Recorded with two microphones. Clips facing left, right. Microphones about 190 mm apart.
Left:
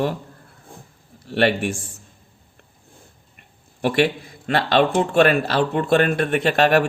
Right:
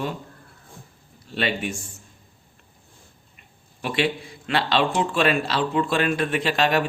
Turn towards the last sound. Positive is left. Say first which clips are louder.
# left 5 dB
turn(degrees=60)  # may be behind; listen again after turning